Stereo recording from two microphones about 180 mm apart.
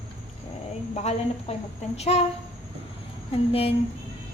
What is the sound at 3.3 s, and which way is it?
Speech, 35° left (ahead or behind).